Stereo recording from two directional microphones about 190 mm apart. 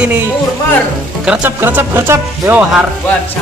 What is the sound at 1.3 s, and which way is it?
Speech, 10° right (ahead or behind).